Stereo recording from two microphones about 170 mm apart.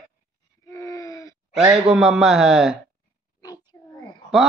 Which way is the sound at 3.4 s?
20° left (ahead or behind).